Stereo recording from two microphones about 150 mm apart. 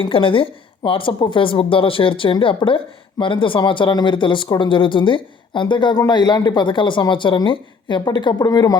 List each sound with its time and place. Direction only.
0.0 s a woman's voice: 35° left (ahead or behind)